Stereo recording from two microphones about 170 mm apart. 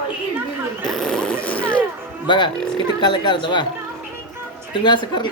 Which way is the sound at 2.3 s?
30° left (ahead or behind).